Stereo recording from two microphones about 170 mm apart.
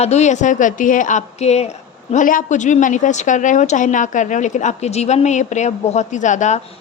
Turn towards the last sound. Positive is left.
turn(degrees=45)  # may be behind; listen again after turning